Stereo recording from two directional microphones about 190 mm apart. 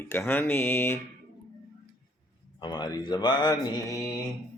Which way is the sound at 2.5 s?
20° left (ahead or behind).